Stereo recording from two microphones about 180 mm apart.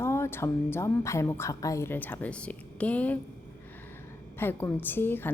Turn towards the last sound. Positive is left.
turn(degrees=10)  # may be behind; listen again after turning